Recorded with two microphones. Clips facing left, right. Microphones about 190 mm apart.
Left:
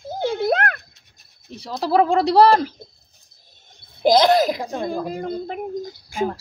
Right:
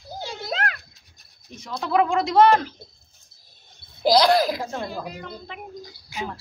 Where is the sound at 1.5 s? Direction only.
30° left (ahead or behind).